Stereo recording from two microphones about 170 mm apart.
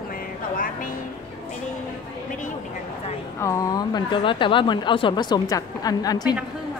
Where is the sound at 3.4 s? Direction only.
20° left (ahead or behind).